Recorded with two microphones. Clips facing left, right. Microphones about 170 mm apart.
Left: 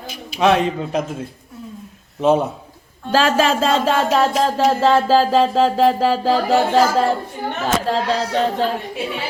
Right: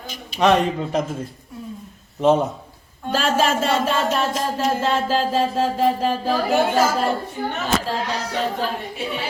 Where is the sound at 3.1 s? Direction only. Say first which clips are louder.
Left 4 dB; 90° left.